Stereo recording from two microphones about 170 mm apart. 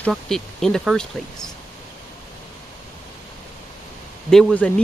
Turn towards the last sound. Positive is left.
turn(degrees=5)  # may be behind; listen again after turning